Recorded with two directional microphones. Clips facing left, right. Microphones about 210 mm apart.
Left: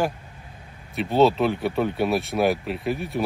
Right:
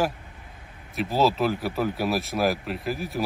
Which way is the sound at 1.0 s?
Centre (ahead or behind).